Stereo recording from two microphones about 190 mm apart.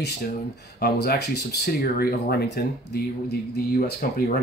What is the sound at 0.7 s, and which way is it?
Speech, 55° left (ahead or behind).